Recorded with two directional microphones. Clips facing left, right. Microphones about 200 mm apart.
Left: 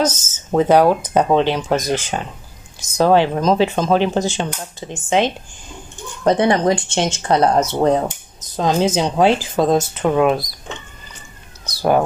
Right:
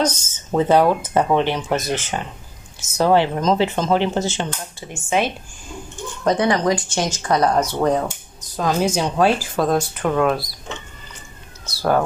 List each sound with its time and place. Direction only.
0.0 s speech: 5° left (ahead or behind)
11.6 s speech: 15° left (ahead or behind)